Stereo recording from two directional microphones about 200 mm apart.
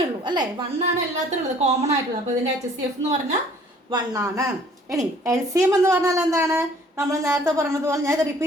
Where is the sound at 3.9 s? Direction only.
15° right (ahead or behind).